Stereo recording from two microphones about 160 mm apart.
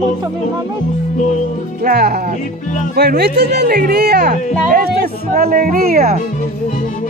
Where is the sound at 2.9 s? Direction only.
80° right.